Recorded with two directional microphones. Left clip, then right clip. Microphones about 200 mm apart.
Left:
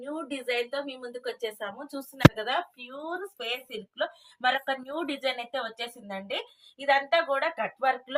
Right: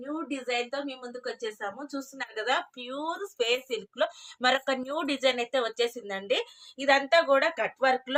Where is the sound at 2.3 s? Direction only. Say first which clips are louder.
Right 1 dB; 45° right (ahead or behind).